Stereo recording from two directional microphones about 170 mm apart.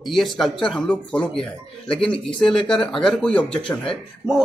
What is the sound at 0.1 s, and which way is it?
A man's voice, centre (ahead or behind).